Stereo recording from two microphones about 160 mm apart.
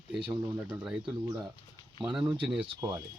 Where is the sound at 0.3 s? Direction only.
10° right (ahead or behind).